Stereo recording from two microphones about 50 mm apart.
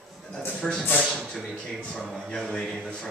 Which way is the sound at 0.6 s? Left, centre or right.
Centre.